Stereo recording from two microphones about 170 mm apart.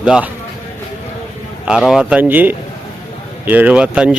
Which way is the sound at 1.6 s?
5° right (ahead or behind).